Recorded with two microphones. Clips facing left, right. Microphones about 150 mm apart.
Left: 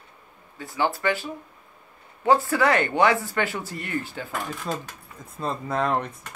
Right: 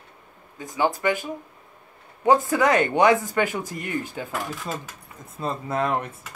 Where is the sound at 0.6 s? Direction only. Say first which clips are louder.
Right 2 dB; 20° right (ahead or behind).